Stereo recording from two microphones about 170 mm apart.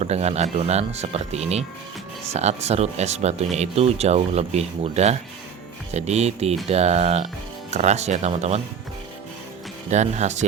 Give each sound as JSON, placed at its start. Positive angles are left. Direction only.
{"t": 0.0, "sound": "speech", "side_deg": -40}
{"t": 9.9, "sound": "speech", "side_deg": -45}